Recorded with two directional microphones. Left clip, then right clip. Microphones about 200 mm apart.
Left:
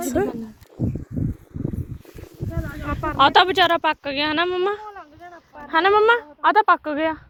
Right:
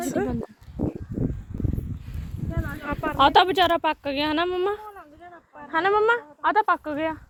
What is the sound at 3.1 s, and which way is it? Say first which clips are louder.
A woman's voice: left 3 dB; 15° right (ahead or behind).